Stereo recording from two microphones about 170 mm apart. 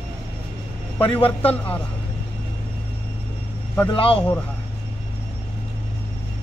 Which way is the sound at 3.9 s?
35° left (ahead or behind).